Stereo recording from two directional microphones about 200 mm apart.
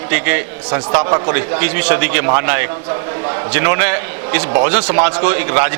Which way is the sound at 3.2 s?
25° right (ahead or behind).